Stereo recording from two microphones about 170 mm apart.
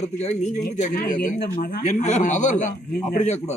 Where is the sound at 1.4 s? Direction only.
60° left (ahead or behind).